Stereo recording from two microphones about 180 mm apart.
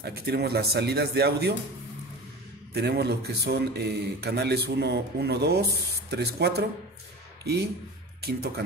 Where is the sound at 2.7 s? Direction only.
65° right (ahead or behind).